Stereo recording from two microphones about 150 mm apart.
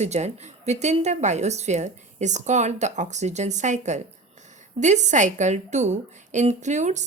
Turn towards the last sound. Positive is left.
turn(degrees=-50)  # may be behind; listen again after turning